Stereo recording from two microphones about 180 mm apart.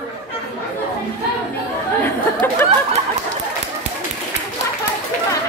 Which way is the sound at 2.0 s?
15° left (ahead or behind).